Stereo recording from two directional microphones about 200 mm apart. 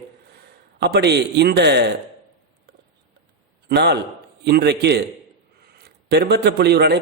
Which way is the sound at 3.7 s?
55° right (ahead or behind).